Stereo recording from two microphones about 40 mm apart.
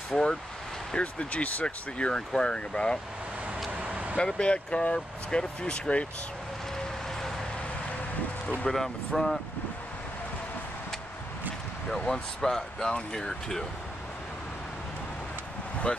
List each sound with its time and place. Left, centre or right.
0.1 s speech: left
0.9 s speech: left
3.7 s vehicle: right
4.2 s speech: left
8.6 s speech: centre
11.9 s speech: centre